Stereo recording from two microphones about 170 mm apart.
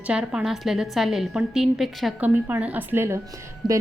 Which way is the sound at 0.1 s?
5° right (ahead or behind).